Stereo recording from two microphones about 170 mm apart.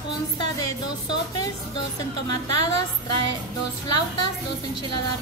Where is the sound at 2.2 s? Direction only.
25° left (ahead or behind).